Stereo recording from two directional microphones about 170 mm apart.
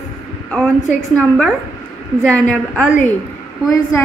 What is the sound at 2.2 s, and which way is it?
Female singing, 5° left (ahead or behind).